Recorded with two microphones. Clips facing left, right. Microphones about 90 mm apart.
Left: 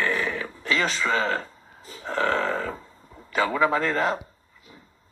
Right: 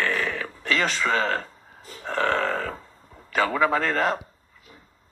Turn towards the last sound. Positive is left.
turn(degrees=15)  # may be behind; listen again after turning